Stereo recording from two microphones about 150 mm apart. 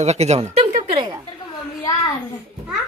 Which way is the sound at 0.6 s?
35° right (ahead or behind).